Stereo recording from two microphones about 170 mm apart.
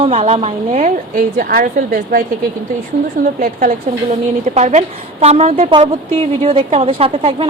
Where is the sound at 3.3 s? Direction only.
55° right (ahead or behind).